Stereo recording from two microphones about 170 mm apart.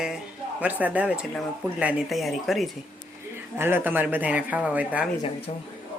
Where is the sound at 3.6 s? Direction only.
15° right (ahead or behind).